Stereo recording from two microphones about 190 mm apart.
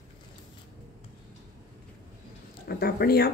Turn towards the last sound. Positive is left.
turn(degrees=55)  # may be behind; listen again after turning